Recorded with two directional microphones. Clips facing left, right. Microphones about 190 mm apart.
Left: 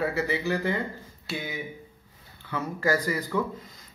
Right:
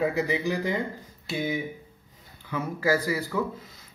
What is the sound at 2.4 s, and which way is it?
Speech, 10° right (ahead or behind).